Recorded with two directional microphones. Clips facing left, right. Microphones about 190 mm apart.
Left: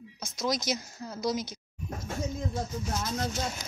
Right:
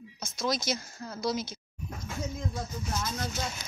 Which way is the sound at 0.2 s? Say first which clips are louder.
Even; 15° left (ahead or behind).